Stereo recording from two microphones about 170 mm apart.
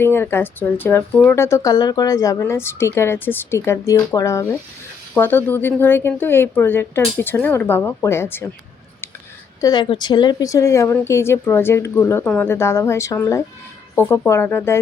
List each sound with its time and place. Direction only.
0.0 s speech: 15° left (ahead or behind)
9.6 s speech: 25° left (ahead or behind)